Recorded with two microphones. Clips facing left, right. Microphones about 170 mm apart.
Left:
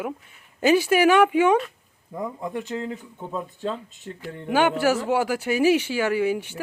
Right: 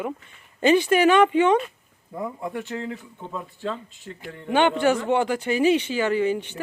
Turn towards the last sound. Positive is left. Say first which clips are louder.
# even
turn(degrees=10)  # may be behind; listen again after turning